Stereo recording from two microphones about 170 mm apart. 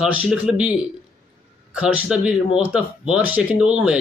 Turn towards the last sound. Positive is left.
turn(degrees=-5)  # may be behind; listen again after turning